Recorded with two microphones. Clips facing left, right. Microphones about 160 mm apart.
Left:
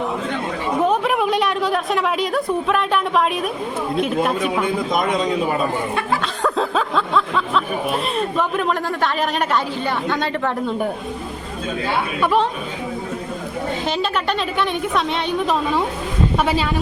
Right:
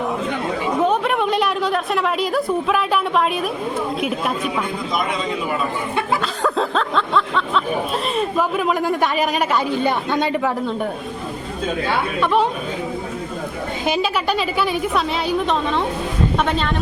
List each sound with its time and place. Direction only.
0.8 s a sound: centre (ahead or behind)
4.0 s a woman's voice: centre (ahead or behind)
4.9 s a man's voice: 45° left (ahead or behind)
6.4 s a sound: centre (ahead or behind)
8.1 s a woman's voice: 5° right (ahead or behind)
13.8 s a woman's voice: 10° right (ahead or behind)